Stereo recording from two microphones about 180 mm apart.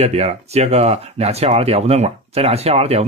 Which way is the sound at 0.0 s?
35° right (ahead or behind).